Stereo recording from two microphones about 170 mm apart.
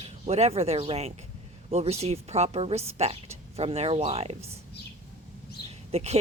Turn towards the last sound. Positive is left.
turn(degrees=-40)  # may be behind; listen again after turning